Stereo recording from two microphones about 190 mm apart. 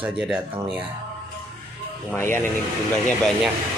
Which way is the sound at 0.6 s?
10° right (ahead or behind).